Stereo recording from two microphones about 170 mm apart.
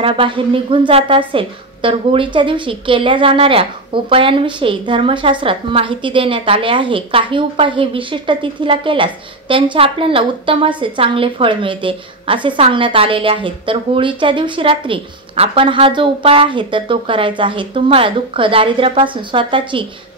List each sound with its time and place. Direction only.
0.0 s a woman's voice: 30° right (ahead or behind)